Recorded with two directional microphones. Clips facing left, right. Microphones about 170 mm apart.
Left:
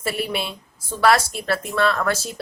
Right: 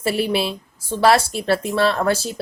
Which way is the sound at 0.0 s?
30° right (ahead or behind).